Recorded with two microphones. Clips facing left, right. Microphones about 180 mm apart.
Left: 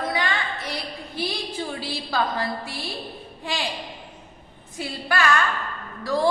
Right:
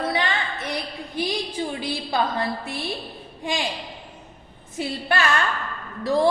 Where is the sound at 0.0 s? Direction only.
25° right (ahead or behind).